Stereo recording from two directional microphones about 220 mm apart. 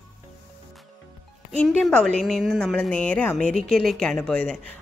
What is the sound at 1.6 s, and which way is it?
A woman's voice, centre (ahead or behind).